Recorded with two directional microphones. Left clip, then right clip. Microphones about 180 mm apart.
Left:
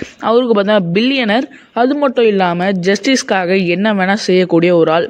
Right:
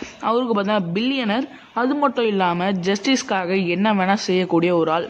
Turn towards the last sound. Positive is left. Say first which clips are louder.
# left 8 dB
turn(degrees=30)  # may be behind; listen again after turning